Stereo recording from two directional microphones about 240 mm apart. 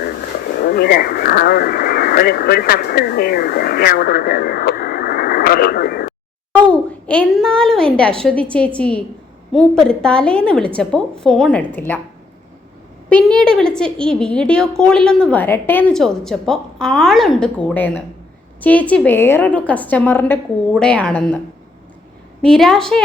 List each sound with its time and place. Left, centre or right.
0.6 s speech: left
6.5 s a sound: centre
8.2 s a woman's voice: centre
13.1 s a woman's voice: centre
22.4 s a woman's voice: centre